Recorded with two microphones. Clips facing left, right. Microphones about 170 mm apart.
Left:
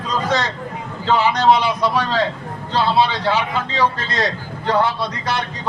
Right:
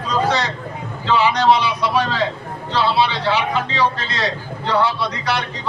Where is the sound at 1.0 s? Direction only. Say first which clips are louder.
Even; 45° left (ahead or behind).